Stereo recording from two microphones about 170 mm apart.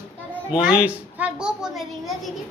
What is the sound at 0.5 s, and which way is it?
A child's voice, 5° right (ahead or behind).